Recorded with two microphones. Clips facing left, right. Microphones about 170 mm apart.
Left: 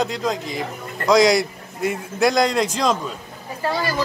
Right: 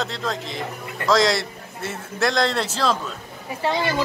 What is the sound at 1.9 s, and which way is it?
Speech, 15° left (ahead or behind).